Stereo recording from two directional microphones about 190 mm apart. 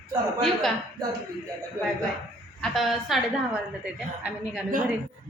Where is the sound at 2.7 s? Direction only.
Centre (ahead or behind).